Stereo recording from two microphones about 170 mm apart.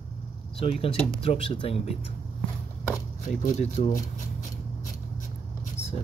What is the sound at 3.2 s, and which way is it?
Speech, 45° left (ahead or behind).